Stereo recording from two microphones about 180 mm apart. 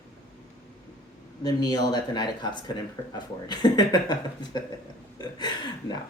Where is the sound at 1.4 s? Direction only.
20° left (ahead or behind).